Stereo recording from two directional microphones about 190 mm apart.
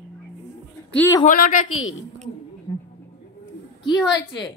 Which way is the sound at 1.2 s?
45° left (ahead or behind).